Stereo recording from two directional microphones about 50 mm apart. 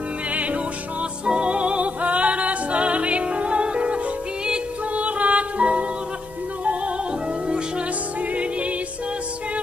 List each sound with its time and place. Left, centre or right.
0.3 s music: right
8.4 s music: right